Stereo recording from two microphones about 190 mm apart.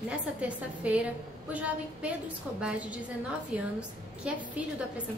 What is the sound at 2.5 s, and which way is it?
A woman's voice, 5° right (ahead or behind).